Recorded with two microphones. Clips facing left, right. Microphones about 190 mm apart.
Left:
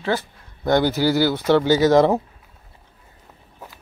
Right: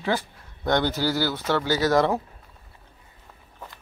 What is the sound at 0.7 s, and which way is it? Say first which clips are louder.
Speech: left 5 dB; 5° left (ahead or behind).